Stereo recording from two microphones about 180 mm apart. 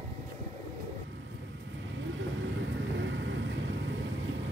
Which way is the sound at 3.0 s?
90° right.